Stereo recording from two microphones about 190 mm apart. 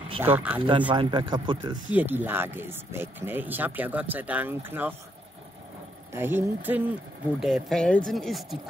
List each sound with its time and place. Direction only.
0.2 s speech: 10° right (ahead or behind)
0.9 s speech: 25° right (ahead or behind)
1.9 s speech: 10° right (ahead or behind)
6.1 s speech: 10° right (ahead or behind)